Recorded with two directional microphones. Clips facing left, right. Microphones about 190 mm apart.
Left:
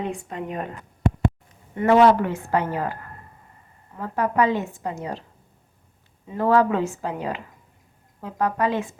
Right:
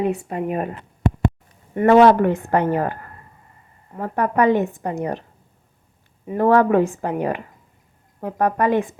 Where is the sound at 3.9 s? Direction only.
55° right (ahead or behind).